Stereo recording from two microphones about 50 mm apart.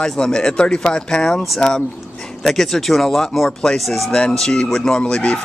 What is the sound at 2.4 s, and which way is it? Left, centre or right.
Speech, centre.